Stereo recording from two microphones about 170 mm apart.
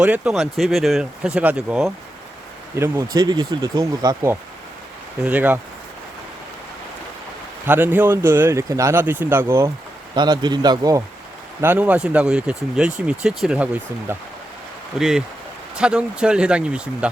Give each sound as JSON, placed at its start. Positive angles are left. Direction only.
{"t": 0.0, "sound": "speech", "side_deg": -5}
{"t": 3.2, "sound": "speech", "side_deg": -25}
{"t": 5.2, "sound": "speech", "side_deg": -10}
{"t": 7.7, "sound": "speech", "side_deg": -10}
{"t": 10.2, "sound": "speech", "side_deg": -25}
{"t": 11.6, "sound": "speech", "side_deg": -10}